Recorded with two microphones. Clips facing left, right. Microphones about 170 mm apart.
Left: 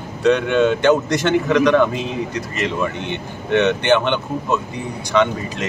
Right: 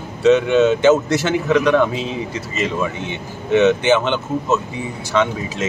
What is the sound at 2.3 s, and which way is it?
Speech, 65° left (ahead or behind).